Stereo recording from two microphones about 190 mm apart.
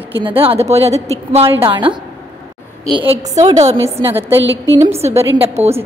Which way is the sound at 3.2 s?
35° right (ahead or behind).